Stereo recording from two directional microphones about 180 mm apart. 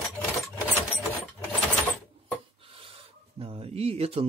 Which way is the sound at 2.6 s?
30° right (ahead or behind).